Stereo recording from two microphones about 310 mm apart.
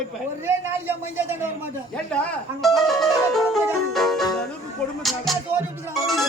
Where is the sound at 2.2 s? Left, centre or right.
Centre.